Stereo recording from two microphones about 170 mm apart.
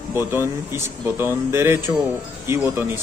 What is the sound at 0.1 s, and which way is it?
Speech, 15° right (ahead or behind).